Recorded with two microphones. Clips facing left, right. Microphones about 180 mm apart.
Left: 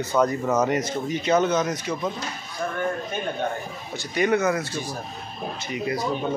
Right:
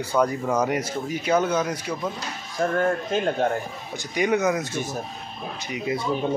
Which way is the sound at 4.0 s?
15° right (ahead or behind).